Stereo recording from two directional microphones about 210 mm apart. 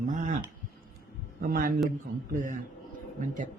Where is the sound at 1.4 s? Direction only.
45° right (ahead or behind).